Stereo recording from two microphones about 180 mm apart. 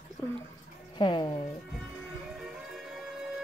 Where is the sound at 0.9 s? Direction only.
25° left (ahead or behind).